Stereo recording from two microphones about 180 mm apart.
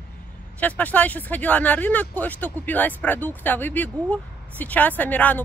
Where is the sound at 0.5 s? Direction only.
10° left (ahead or behind).